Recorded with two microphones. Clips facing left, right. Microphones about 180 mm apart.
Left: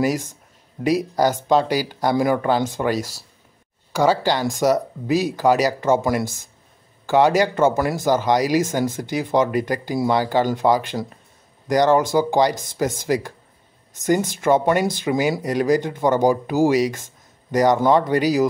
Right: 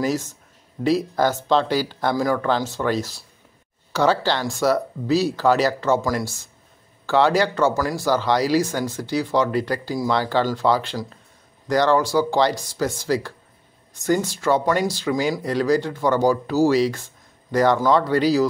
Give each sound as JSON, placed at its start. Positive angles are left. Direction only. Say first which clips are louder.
{"t": 0.0, "sound": "speech", "louder": "left 2 dB", "side_deg": 15}